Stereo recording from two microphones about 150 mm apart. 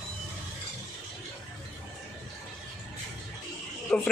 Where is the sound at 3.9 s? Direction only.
10° left (ahead or behind).